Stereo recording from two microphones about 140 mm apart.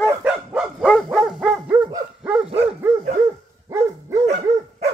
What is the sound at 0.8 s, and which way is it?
Dog, centre (ahead or behind).